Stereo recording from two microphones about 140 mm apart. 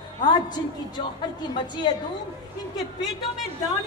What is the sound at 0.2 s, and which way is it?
A man's voice, 30° left (ahead or behind).